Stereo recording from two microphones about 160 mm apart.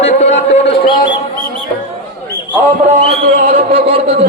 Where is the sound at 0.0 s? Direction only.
40° left (ahead or behind).